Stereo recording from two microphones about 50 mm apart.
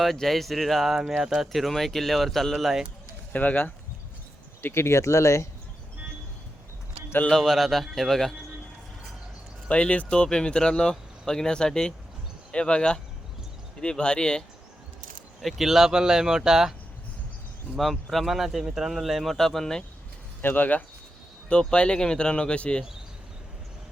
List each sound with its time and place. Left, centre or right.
0.0 s speech: centre
1.6 s speech: centre
3.3 s speech: left
4.6 s speech: left
7.3 s speech: centre
9.6 s speech: left
15.4 s speech: centre
17.7 s speech: centre
20.4 s speech: left
21.5 s speech: centre